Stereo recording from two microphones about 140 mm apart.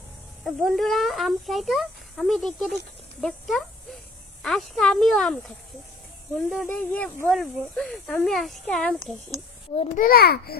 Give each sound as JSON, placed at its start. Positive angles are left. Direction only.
{"t": 0.4, "sound": "speech", "side_deg": 0}
{"t": 6.5, "sound": "speech", "side_deg": 5}
{"t": 9.9, "sound": "a child's voice", "side_deg": 90}